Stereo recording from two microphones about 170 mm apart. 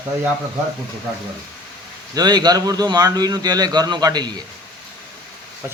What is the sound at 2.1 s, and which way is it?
Speech, 25° right (ahead or behind).